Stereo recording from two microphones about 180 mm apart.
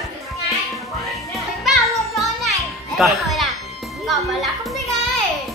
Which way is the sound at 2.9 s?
Centre (ahead or behind).